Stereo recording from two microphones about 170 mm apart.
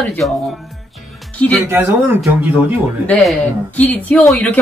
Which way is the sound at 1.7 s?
15° right (ahead or behind).